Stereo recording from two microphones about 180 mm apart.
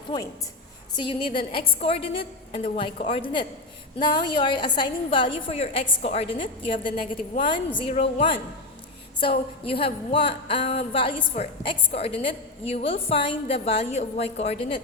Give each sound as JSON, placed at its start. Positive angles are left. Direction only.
{"t": 0.1, "sound": "a woman's voice", "side_deg": 25}
{"t": 9.2, "sound": "a woman's voice", "side_deg": 30}